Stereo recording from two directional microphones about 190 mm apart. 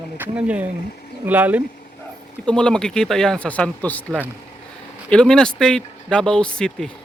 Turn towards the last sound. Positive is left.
turn(degrees=5)  # may be behind; listen again after turning